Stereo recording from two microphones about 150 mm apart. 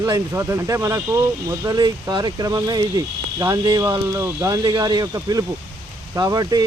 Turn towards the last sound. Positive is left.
turn(degrees=-25)  # may be behind; listen again after turning